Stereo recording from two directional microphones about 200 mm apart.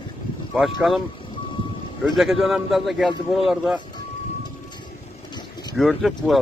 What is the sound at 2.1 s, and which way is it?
Speech, centre (ahead or behind).